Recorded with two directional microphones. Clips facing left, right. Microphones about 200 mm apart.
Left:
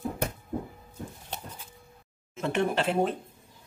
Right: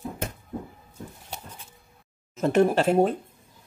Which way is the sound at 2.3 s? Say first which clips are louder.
Right 7 dB; 40° right (ahead or behind).